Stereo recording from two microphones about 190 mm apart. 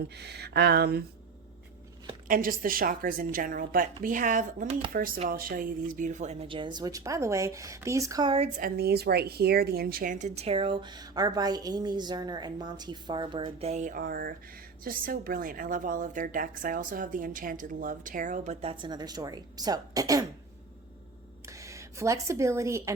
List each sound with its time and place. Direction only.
0.2 s speech: 60° right (ahead or behind)
2.2 s a woman's voice: 45° right (ahead or behind); by 8.4 s 25° right (ahead or behind)
8.5 s a woman's voice: 50° right (ahead or behind); by 20.2 s 20° right (ahead or behind)
21.4 s speech: 15° right (ahead or behind)